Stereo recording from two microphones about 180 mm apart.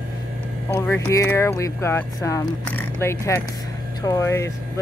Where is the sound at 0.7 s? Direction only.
15° left (ahead or behind).